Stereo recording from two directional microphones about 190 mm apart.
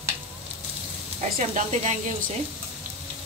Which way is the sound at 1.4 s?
40° right (ahead or behind).